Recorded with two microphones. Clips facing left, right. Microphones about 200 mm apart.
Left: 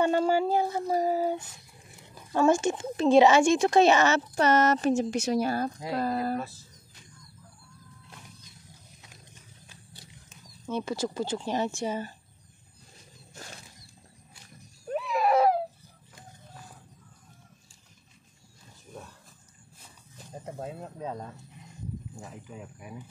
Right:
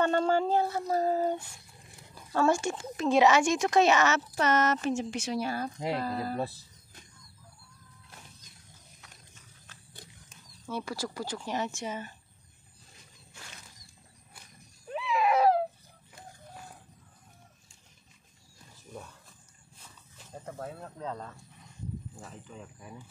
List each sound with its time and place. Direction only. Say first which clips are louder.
0.0 s speech: left 2 dB; 10° left (ahead or behind)
2.3 s speech: left 3 dB; 20° left (ahead or behind); by 6.3 s 45° left (ahead or behind)
6.3 s speech: even; 35° right (ahead or behind)
10.7 s speech: left 5 dB; 20° left (ahead or behind)
14.9 s baby cry: left 2 dB; 45° left (ahead or behind)
20.2 s speech: left 2 dB; 20° left (ahead or behind)